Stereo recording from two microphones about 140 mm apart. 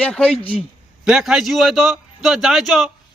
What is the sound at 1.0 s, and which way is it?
A man's voice, 5° right (ahead or behind).